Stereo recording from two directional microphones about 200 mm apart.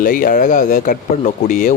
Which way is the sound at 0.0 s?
45° left (ahead or behind).